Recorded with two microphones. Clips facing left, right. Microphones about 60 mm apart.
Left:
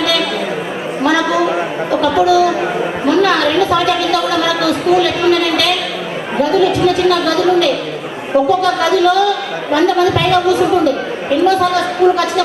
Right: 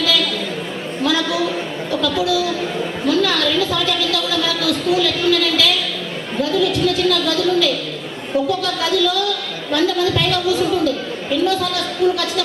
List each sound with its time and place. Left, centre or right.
0.0 s chatter: left
1.0 s a sound: centre
3.1 s a woman's voice: left